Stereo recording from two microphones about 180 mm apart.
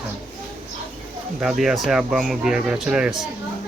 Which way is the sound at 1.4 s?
5° right (ahead or behind).